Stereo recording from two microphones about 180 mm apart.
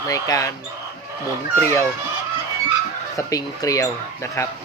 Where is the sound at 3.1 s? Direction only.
20° left (ahead or behind).